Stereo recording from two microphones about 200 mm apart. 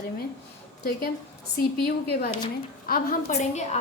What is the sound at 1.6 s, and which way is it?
Speech, 50° left (ahead or behind).